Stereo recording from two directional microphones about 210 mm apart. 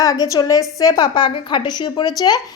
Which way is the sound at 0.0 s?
15° left (ahead or behind).